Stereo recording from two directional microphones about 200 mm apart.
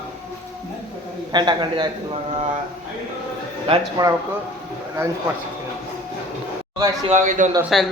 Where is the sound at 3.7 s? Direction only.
25° right (ahead or behind).